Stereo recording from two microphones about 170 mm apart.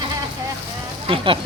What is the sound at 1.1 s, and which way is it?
Speech, 30° right (ahead or behind).